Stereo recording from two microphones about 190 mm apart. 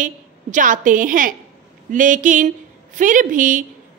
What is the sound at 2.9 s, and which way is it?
Speech, 45° right (ahead or behind).